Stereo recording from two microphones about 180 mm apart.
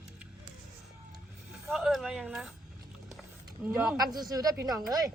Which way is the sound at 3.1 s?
5° right (ahead or behind).